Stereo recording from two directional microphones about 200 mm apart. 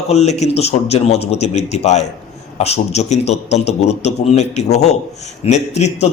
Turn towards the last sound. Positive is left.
turn(degrees=35)  # may be behind; listen again after turning